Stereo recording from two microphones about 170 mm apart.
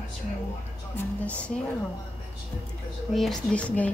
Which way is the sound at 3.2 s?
5° left (ahead or behind).